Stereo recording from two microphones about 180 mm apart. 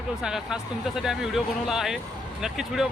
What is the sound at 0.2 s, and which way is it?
Speech, 5° right (ahead or behind).